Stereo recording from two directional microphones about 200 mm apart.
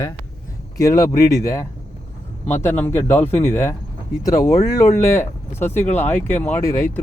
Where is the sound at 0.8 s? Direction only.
15° left (ahead or behind).